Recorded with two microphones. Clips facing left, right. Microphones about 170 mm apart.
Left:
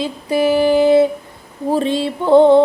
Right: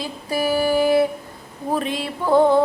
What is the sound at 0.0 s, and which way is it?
Female singing, 25° left (ahead or behind).